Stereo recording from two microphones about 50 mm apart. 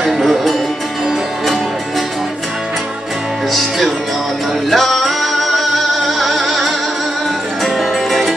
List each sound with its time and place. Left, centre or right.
0.0 s music: centre
4.6 s music: centre